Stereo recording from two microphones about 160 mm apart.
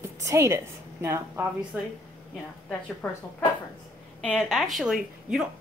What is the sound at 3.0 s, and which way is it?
Speech, 15° left (ahead or behind).